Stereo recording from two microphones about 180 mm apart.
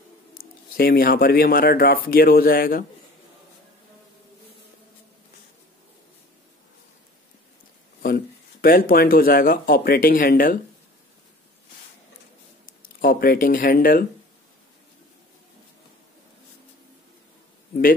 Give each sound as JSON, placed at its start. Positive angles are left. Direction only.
{"t": 0.7, "sound": "speech", "side_deg": 55}
{"t": 8.0, "sound": "speech", "side_deg": 55}
{"t": 12.6, "sound": "speech", "side_deg": 50}